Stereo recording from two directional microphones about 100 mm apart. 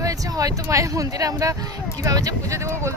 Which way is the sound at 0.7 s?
35° right (ahead or behind).